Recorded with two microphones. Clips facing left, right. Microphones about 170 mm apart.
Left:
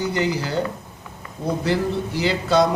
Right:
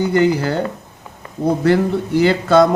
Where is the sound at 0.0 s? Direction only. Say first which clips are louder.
Right 8 dB; 55° right (ahead or behind).